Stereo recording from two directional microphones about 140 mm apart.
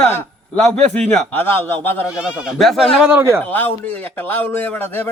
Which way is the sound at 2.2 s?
Centre (ahead or behind).